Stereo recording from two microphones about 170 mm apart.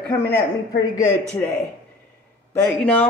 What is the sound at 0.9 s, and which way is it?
Speech, 15° left (ahead or behind).